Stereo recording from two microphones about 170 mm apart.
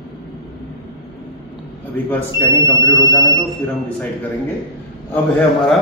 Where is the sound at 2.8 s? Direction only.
25° left (ahead or behind).